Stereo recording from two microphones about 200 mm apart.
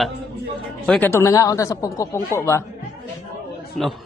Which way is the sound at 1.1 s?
15° left (ahead or behind).